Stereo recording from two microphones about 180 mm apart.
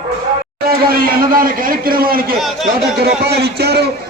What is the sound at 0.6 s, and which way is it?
A man's voice, 55° right (ahead or behind).